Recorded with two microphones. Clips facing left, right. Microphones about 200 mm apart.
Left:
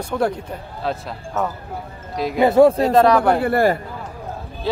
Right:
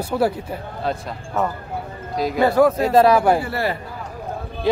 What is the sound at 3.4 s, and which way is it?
Speech, 50° left (ahead or behind).